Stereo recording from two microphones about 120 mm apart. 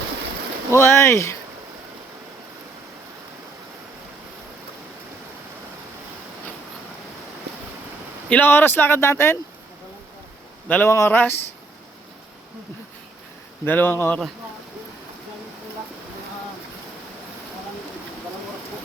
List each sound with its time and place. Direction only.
0.7 s speech: 25° left (ahead or behind)
8.3 s speech: 15° left (ahead or behind)
10.7 s speech: 15° left (ahead or behind)
13.7 s speech: 15° left (ahead or behind)